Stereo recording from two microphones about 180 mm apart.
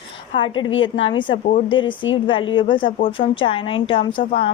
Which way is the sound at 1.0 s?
25° left (ahead or behind).